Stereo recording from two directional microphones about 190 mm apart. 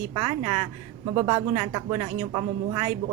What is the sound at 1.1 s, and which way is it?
Speech, 25° right (ahead or behind).